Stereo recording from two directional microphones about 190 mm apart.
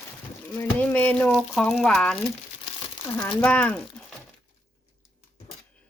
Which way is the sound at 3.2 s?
5° left (ahead or behind).